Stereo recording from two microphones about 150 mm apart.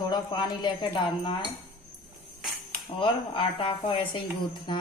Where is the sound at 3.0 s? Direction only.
35° left (ahead or behind).